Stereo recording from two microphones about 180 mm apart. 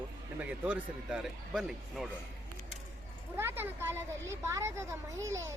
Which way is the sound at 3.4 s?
10° right (ahead or behind).